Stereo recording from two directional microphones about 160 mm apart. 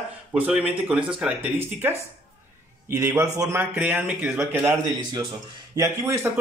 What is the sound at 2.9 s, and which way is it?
Speech, 15° right (ahead or behind).